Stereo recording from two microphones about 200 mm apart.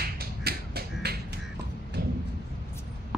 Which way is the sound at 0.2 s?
50° right (ahead or behind).